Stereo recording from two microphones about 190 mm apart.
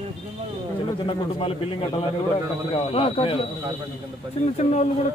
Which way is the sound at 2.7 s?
30° left (ahead or behind).